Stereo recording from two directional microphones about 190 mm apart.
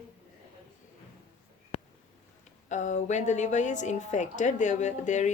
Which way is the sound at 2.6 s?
40° left (ahead or behind).